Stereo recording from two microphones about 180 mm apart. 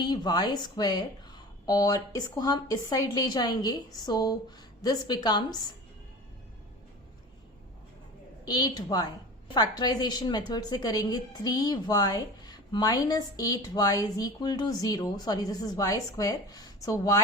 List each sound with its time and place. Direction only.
0.0 s a woman's voice: 25° left (ahead or behind)
8.4 s a woman's voice: 25° left (ahead or behind)